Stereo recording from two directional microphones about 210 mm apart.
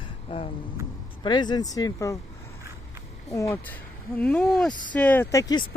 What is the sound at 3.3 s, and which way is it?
Speech, 15° left (ahead or behind).